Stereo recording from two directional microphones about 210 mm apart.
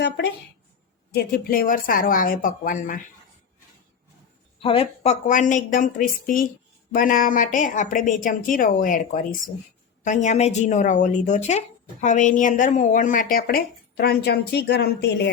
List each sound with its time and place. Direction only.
0.0 s a woman's voice: 50° left (ahead or behind)
4.6 s a woman's voice: 25° left (ahead or behind); by 15.3 s 50° left (ahead or behind)